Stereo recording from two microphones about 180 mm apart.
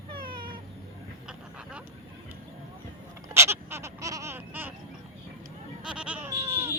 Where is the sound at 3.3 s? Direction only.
15° right (ahead or behind).